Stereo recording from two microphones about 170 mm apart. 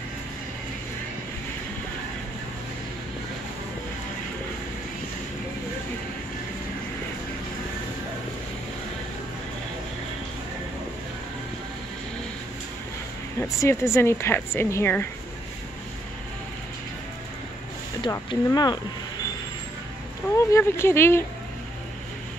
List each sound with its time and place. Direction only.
13.4 s speech: 15° left (ahead or behind)
18.0 s speech: 25° left (ahead or behind)
20.3 s speech: 15° left (ahead or behind)